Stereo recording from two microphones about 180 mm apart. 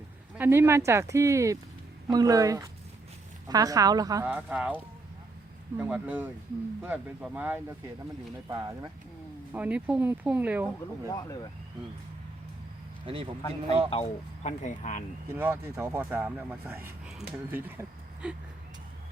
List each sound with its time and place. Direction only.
0.3 s a woman's voice: 10° right (ahead or behind)
4.3 s speech: 10° right (ahead or behind)
5.7 s speech: 10° right (ahead or behind)
8.4 s a woman's voice: 20° right (ahead or behind)
9.5 s speech: 10° right (ahead or behind)
13.1 s a woman's voice: 30° right (ahead or behind)
13.9 s speech: 35° left (ahead or behind)
15.4 s speech: 10° right (ahead or behind)
17.7 s vehicle: 5° right (ahead or behind)